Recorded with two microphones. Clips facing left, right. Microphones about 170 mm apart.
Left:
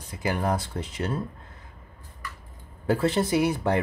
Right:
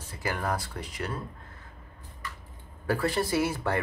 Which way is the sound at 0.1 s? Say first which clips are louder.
Left 5 dB; 20° left (ahead or behind).